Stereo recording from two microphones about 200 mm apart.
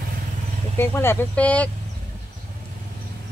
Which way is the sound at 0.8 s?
10° left (ahead or behind).